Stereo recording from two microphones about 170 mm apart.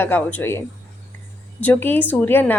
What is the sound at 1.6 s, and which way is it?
Speech, 10° left (ahead or behind).